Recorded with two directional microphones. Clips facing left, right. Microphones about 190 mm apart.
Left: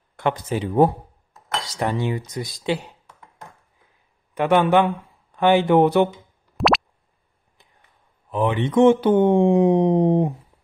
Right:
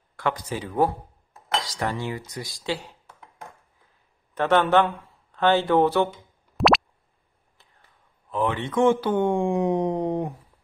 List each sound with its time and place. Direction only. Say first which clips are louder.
0.1 s speech: left 4 dB; 20° left (ahead or behind)
4.4 s speech: left 3 dB; 10° left (ahead or behind)
6.5 s plop: even; centre (ahead or behind)
8.3 s speech: left 4 dB; 15° left (ahead or behind)